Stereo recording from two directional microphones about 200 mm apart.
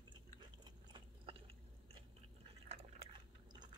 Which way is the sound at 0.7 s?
25° right (ahead or behind).